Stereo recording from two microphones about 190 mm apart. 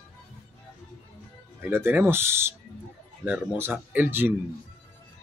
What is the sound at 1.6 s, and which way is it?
Speech, 10° right (ahead or behind).